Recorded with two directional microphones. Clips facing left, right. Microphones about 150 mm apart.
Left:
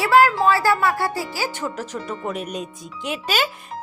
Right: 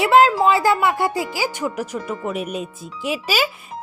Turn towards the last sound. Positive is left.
turn(degrees=-10)  # may be behind; listen again after turning